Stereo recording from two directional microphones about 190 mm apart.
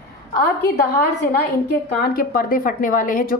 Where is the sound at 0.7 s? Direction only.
60° left (ahead or behind).